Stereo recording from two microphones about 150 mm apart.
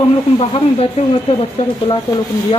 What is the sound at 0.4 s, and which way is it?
Speech, 40° left (ahead or behind).